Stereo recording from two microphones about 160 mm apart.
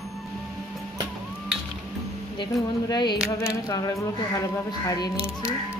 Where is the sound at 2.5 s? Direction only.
Centre (ahead or behind).